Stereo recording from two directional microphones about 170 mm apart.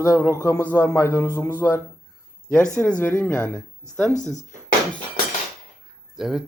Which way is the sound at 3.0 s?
10° left (ahead or behind).